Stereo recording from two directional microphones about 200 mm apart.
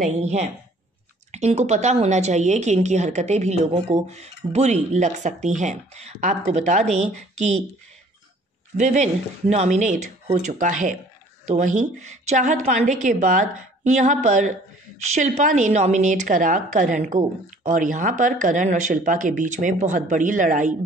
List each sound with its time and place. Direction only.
0.0 s a woman's voice: 35° right (ahead or behind)
8.7 s a woman's voice: 35° right (ahead or behind)